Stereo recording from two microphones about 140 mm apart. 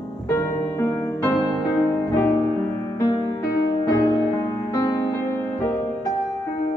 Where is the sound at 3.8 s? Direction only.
25° left (ahead or behind).